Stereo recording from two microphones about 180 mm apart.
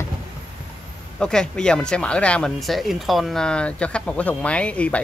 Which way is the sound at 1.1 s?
5° left (ahead or behind).